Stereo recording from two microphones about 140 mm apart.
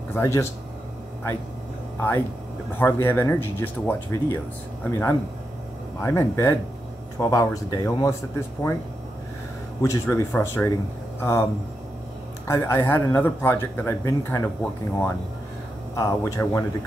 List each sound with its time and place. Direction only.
0.1 s speech: 15° left (ahead or behind)
2.0 s speech: 15° left (ahead or behind)
9.8 s speech: 20° left (ahead or behind)
12.4 s speech: 15° left (ahead or behind)